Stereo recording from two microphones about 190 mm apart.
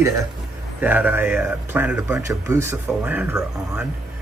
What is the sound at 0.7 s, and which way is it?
Speech, 10° right (ahead or behind).